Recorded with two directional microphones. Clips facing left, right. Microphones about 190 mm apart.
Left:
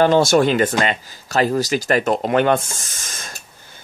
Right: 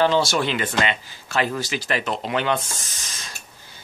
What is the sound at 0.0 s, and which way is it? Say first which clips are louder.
Speech: left 6 dB; 50° left (ahead or behind).